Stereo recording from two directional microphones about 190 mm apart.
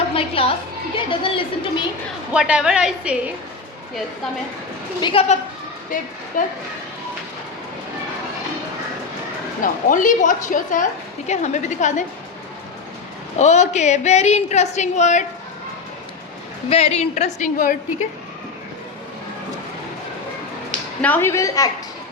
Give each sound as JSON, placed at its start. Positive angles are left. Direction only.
{"t": 0.1, "sound": "a woman's voice", "side_deg": 30}
{"t": 2.3, "sound": "a woman's voice", "side_deg": -5}
{"t": 4.9, "sound": "a woman's voice", "side_deg": 25}
{"t": 5.9, "sound": "a woman's voice", "side_deg": 45}
{"t": 9.9, "sound": "a woman's voice", "side_deg": 45}
{"t": 13.4, "sound": "a woman's voice", "side_deg": 35}
{"t": 16.6, "sound": "a woman's voice", "side_deg": 35}
{"t": 21.0, "sound": "a woman's voice", "side_deg": 10}